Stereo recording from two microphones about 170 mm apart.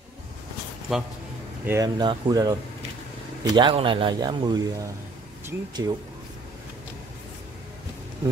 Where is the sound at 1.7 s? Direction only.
20° right (ahead or behind).